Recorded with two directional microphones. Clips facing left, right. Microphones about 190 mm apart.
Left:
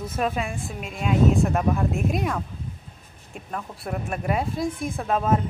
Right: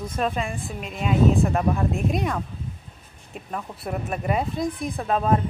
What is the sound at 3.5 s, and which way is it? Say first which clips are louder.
Speech: right 1 dB; centre (ahead or behind).